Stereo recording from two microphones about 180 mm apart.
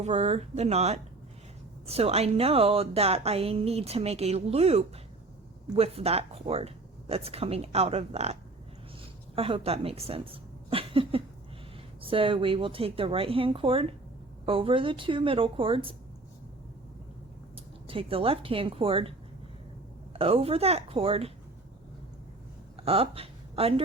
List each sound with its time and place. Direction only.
0.0 s a woman's voice: 35° right (ahead or behind)
17.8 s speech: 30° right (ahead or behind)
20.1 s speech: 30° right (ahead or behind)
22.8 s speech: 30° right (ahead or behind)